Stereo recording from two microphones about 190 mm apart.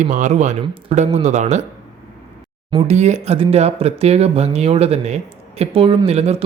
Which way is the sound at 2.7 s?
35° right (ahead or behind).